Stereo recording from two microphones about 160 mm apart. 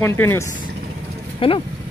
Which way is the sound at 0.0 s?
15° left (ahead or behind).